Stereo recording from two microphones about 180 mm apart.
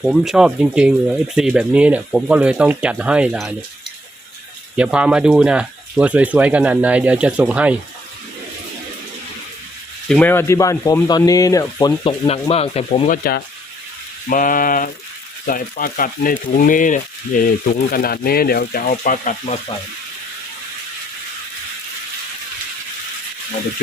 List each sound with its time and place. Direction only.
0.0 s speech: centre (ahead or behind)
4.8 s speech: 5° right (ahead or behind)
10.1 s speech: 10° left (ahead or behind); by 12.8 s 35° left (ahead or behind)
13.1 s speech: 55° left (ahead or behind)